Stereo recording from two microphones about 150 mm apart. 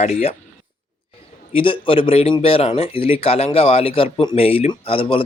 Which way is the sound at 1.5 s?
35° left (ahead or behind).